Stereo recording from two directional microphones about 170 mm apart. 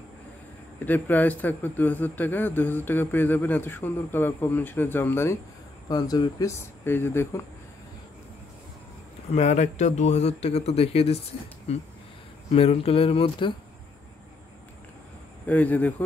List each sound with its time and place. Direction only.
0.8 s a man's voice: 10° left (ahead or behind)
6.8 s a man's voice: 15° left (ahead or behind)
9.3 s speech: 40° left (ahead or behind)
12.5 s speech: 35° left (ahead or behind)
15.4 s a man's voice: 10° left (ahead or behind)